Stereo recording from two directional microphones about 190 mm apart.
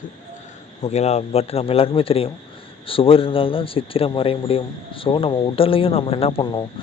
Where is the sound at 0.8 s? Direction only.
35° left (ahead or behind).